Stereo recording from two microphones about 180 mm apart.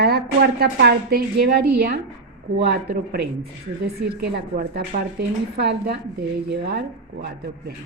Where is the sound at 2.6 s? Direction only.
65° right (ahead or behind).